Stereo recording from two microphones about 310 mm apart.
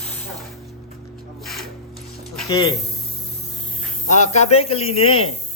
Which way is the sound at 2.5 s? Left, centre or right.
Centre.